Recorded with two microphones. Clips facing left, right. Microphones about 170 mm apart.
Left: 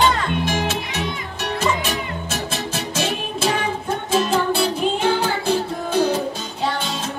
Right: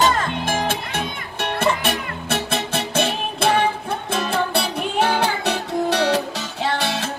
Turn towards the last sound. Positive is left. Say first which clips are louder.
# right 1 dB
turn(degrees=-75)  # may be behind; listen again after turning